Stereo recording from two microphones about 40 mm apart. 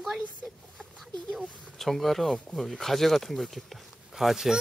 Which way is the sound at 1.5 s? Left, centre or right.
Centre.